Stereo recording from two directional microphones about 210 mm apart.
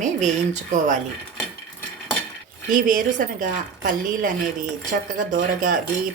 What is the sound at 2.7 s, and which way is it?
Speech, 40° right (ahead or behind).